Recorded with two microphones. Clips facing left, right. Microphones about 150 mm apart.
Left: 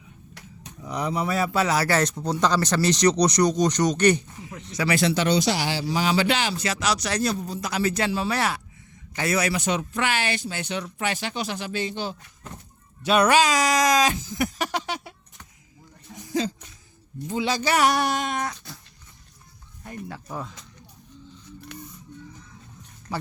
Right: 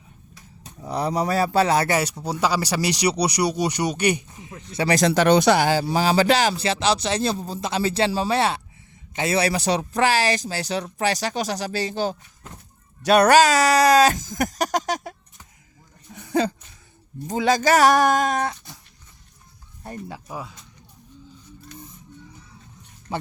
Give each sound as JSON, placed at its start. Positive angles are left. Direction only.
{"t": 0.8, "sound": "speech", "side_deg": -35}
{"t": 1.9, "sound": "speech", "side_deg": -10}
{"t": 4.7, "sound": "speech", "side_deg": -35}
{"t": 6.7, "sound": "speech", "side_deg": -30}
{"t": 16.1, "sound": "a sound", "side_deg": -60}
{"t": 17.2, "sound": "speech", "side_deg": -45}
{"t": 20.1, "sound": "speech", "side_deg": -10}